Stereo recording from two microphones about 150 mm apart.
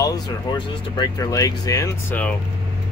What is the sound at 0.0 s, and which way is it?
Speech, 25° left (ahead or behind).